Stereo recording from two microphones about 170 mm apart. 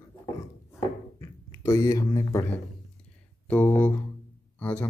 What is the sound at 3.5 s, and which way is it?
Speech, 10° left (ahead or behind).